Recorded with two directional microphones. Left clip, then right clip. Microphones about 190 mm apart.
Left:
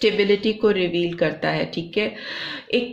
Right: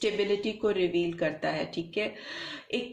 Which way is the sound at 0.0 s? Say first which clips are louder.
Left 9 dB; 30° left (ahead or behind).